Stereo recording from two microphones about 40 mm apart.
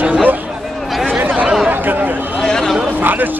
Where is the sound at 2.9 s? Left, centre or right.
Right.